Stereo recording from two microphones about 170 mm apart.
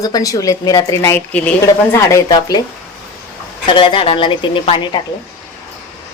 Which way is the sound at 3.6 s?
30° left (ahead or behind).